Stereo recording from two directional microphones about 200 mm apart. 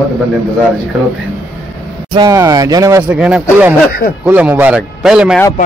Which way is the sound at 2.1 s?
20° right (ahead or behind).